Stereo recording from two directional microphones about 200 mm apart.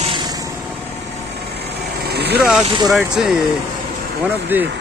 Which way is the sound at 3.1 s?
5° right (ahead or behind).